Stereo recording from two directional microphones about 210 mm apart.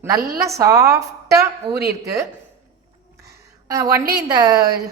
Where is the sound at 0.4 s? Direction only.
15° right (ahead or behind).